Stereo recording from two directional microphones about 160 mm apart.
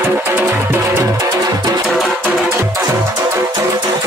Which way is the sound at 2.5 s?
20° right (ahead or behind).